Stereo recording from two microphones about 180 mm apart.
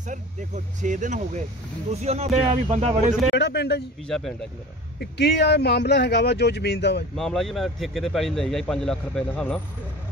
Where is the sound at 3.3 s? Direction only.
70° left (ahead or behind).